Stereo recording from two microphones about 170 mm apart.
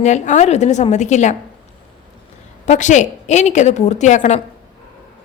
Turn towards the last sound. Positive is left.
turn(degrees=45)  # may be behind; listen again after turning